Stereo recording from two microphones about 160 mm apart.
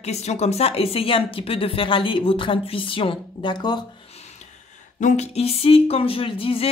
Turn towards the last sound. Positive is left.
turn(degrees=35)  # may be behind; listen again after turning